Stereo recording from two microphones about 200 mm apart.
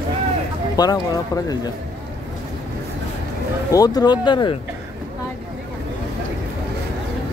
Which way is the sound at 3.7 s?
20° left (ahead or behind).